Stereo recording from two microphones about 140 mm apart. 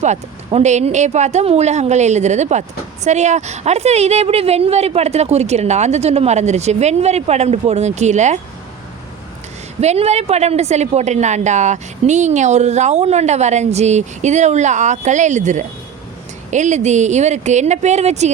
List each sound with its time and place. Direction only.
0.0 s speech: 55° right (ahead or behind)
9.8 s a woman's voice: 50° right (ahead or behind)